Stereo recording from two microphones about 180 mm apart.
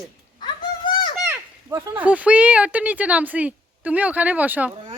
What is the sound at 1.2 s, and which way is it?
Speech, 15° right (ahead or behind).